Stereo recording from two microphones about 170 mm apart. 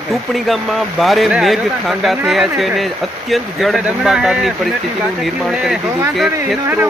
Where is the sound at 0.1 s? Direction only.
Centre (ahead or behind).